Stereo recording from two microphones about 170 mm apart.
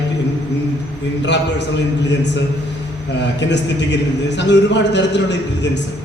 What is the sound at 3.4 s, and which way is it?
A man's voice, 90° left.